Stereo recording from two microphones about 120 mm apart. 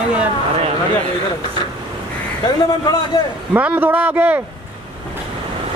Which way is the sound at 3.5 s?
15° right (ahead or behind).